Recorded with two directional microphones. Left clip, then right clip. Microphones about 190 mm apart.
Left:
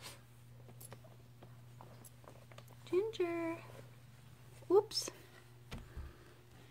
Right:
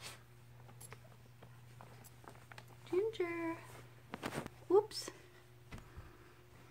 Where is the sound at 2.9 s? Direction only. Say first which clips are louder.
Left 1 dB; 20° left (ahead or behind).